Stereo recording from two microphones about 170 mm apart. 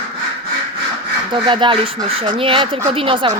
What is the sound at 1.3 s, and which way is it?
Speech, 30° right (ahead or behind).